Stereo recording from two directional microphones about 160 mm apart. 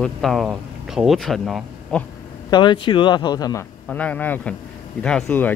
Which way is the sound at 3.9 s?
10° left (ahead or behind).